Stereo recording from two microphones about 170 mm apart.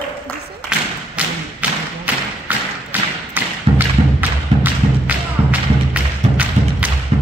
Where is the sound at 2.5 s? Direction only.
10° right (ahead or behind).